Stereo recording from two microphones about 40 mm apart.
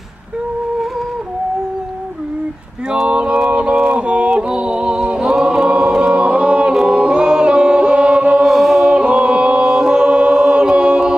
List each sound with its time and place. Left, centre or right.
3.1 s a sound: right
3.4 s music: right
8.4 s singing: centre
8.9 s chant: right